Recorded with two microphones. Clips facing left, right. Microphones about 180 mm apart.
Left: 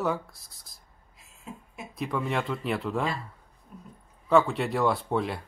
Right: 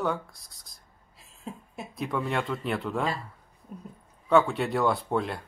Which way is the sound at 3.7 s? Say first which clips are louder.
Right 5 dB; 40° right (ahead or behind).